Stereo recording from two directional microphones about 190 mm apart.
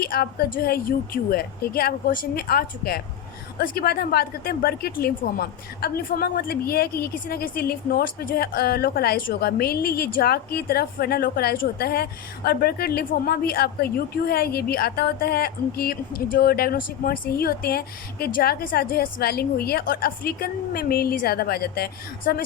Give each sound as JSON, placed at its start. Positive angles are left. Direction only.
{"t": 0.0, "sound": "speech", "side_deg": 55}